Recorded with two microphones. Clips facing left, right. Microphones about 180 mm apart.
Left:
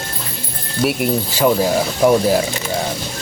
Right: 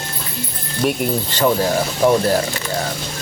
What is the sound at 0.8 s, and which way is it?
Speech, 5° left (ahead or behind).